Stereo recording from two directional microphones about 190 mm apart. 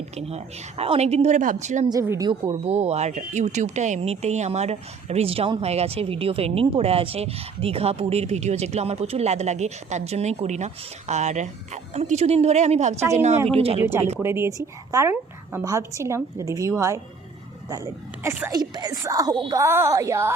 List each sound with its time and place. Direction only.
0.2 s speech: 35° right (ahead or behind)
1.9 s speech: 15° right (ahead or behind)
14.2 s speech: 15° right (ahead or behind)